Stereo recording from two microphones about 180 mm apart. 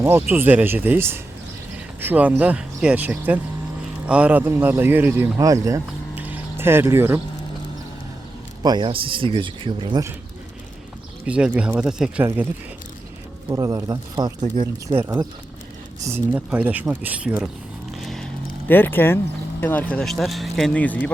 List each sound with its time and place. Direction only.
0.0 s speech: 15° right (ahead or behind)
8.6 s speech: 25° right (ahead or behind)
11.3 s speech: 5° right (ahead or behind)
13.5 s speech: 20° right (ahead or behind)
14.4 s speech: 45° right (ahead or behind)
14.8 s speech: 15° right (ahead or behind)
17.9 s a sound: centre (ahead or behind)
18.7 s speech: 10° left (ahead or behind)